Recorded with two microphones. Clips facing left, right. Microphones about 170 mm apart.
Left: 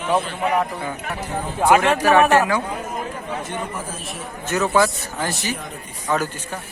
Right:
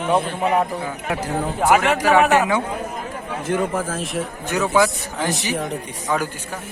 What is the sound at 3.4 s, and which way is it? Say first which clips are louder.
Speech: right 7 dB; 90° right.